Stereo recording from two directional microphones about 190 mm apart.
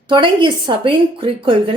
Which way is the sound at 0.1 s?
25° right (ahead or behind).